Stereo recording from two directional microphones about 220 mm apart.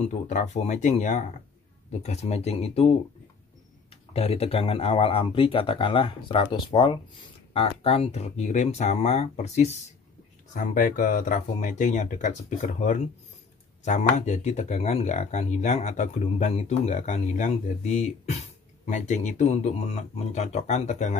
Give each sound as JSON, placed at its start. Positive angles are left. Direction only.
{"t": 0.0, "sound": "speech", "side_deg": 35}
{"t": 3.9, "sound": "speech", "side_deg": 25}